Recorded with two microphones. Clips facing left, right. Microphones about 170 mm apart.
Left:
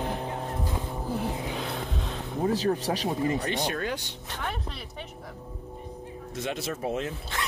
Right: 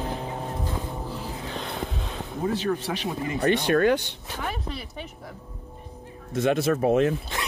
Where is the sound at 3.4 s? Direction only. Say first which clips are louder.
Right 9 dB; 65° right (ahead or behind).